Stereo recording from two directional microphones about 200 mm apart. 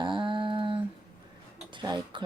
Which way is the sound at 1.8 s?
20° right (ahead or behind).